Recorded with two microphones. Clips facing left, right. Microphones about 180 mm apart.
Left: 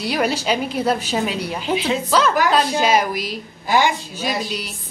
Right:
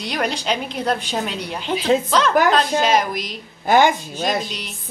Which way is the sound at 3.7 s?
50° right (ahead or behind).